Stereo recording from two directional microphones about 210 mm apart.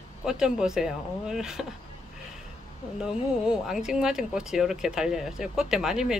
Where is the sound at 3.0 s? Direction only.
5° right (ahead or behind).